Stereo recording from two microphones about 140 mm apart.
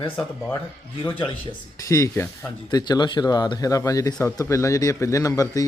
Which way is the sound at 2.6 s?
30° left (ahead or behind).